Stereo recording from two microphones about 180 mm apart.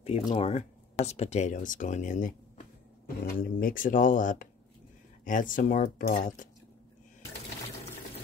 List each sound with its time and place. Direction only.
0.0 s speech: 35° left (ahead or behind)